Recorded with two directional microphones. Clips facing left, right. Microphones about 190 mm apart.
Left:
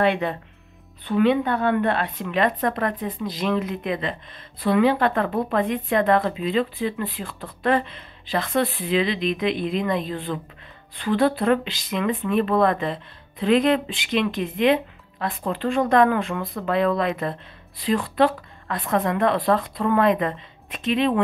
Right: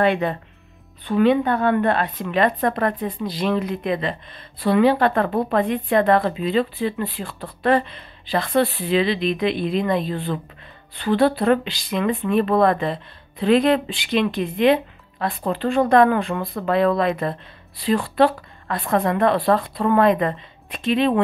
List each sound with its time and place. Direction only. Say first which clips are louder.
0.0 s speech: right 2 dB; 45° right (ahead or behind)